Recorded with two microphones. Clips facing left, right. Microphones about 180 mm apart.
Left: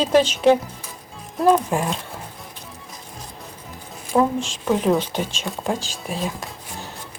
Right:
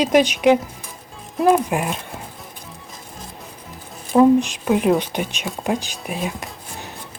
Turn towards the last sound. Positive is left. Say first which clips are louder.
# right 1 dB
turn(degrees=-15)  # may be behind; listen again after turning